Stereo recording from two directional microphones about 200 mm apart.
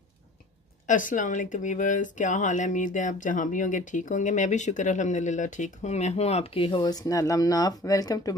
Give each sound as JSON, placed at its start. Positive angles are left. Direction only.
{"t": 0.8, "sound": "speech", "side_deg": 40}